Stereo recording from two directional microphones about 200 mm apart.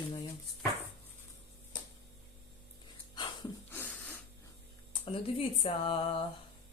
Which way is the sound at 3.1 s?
20° left (ahead or behind).